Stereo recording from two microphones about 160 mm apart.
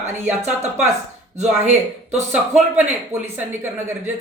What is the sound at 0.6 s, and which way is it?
Speech, 45° right (ahead or behind).